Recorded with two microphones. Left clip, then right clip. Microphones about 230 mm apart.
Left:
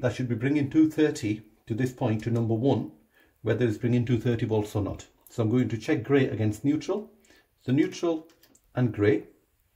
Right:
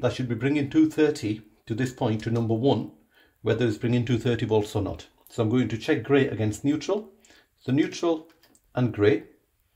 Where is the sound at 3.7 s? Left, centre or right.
Right.